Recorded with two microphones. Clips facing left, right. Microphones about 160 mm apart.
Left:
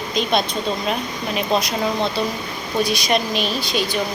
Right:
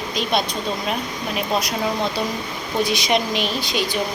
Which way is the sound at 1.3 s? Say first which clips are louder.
Left 3 dB; 10° right (ahead or behind).